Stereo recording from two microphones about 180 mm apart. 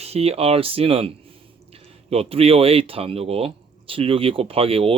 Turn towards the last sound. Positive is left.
turn(degrees=-30)  # may be behind; listen again after turning